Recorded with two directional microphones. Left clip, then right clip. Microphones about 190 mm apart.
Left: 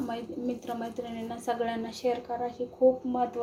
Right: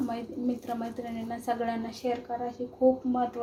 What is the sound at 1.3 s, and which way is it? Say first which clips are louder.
A woman's voice: even; 5° left (ahead or behind).